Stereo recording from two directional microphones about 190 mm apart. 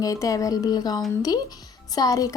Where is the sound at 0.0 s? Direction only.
20° left (ahead or behind).